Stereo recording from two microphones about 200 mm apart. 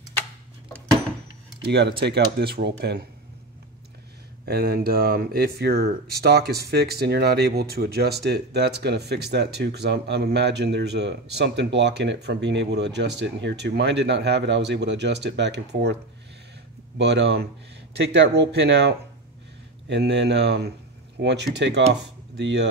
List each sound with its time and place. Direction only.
1.6 s speech: 55° right (ahead or behind)
4.5 s speech: 50° right (ahead or behind)